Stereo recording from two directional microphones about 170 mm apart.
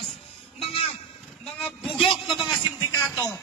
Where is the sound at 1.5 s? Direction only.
5° left (ahead or behind).